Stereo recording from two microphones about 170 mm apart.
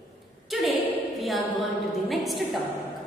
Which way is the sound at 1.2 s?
Centre (ahead or behind).